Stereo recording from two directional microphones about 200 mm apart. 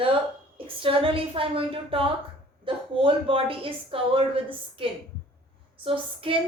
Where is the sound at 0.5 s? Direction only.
25° right (ahead or behind).